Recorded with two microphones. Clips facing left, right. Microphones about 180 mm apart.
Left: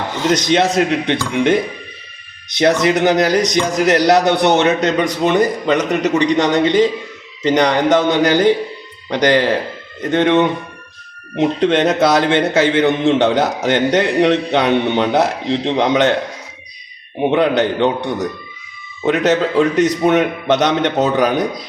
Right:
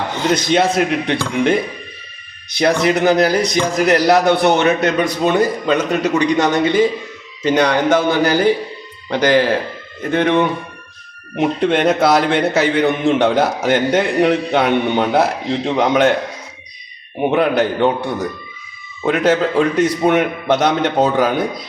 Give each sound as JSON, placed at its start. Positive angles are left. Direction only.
{"t": 0.3, "sound": "a man's voice", "side_deg": 20}
{"t": 17.2, "sound": "a man's voice", "side_deg": 20}